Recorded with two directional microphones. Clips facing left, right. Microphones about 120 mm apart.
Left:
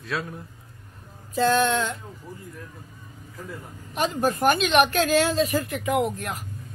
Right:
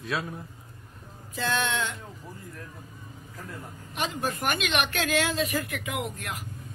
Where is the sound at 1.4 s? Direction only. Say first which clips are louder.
Left 8 dB; 40° left (ahead or behind).